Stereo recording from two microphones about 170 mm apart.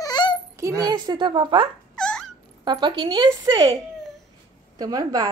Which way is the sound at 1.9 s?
5° left (ahead or behind).